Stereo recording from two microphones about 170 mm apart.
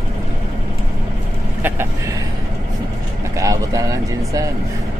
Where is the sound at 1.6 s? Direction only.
10° right (ahead or behind).